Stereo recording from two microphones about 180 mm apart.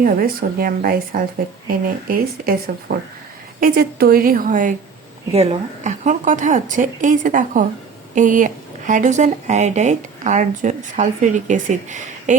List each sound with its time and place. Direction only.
0.0 s speech: 55° right (ahead or behind)
3.6 s speech: 55° right (ahead or behind)
5.3 s speech: 35° right (ahead or behind)